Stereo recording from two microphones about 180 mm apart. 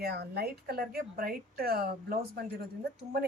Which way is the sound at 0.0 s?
65° right (ahead or behind).